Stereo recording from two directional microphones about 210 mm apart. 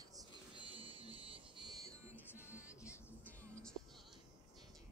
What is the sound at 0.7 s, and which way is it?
Music, 25° right (ahead or behind).